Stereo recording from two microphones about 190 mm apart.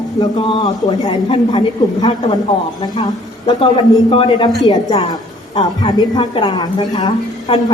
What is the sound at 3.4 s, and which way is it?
A woman's voice, 25° left (ahead or behind).